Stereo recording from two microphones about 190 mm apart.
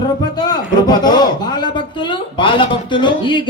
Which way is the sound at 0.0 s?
20° left (ahead or behind).